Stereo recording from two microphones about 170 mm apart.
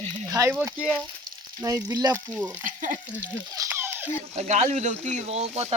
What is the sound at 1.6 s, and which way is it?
Frying, 20° right (ahead or behind).